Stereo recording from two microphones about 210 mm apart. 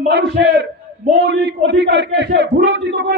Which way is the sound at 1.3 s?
55° right (ahead or behind).